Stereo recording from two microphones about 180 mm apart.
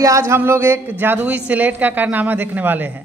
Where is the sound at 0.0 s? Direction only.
15° right (ahead or behind).